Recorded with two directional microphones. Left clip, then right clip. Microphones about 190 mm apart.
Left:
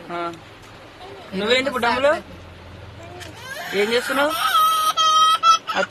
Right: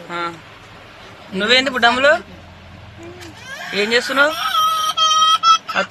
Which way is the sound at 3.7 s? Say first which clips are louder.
Right 4 dB; 5° left (ahead or behind).